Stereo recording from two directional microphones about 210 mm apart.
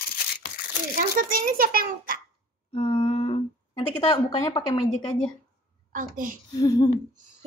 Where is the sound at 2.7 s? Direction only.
30° left (ahead or behind).